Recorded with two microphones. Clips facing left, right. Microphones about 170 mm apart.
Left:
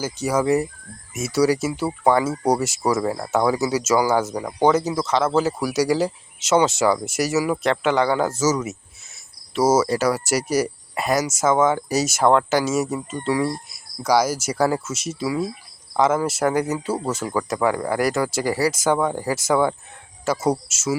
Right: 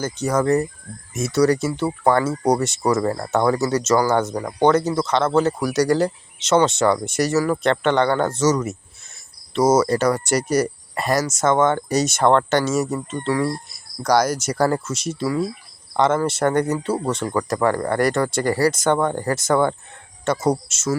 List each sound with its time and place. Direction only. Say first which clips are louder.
0.0 s speech: right 1 dB; 5° left (ahead or behind)